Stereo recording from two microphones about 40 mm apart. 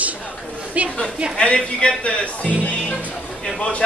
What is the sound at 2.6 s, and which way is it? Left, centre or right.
Music, left.